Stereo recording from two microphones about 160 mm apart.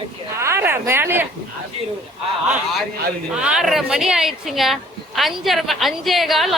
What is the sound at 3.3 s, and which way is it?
Speech, 5° right (ahead or behind).